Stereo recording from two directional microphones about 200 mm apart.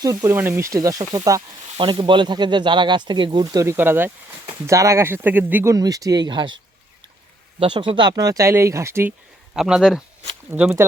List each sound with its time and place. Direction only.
0.0 s speech: 15° right (ahead or behind)
7.6 s speech: 25° right (ahead or behind); by 10.8 s 10° right (ahead or behind)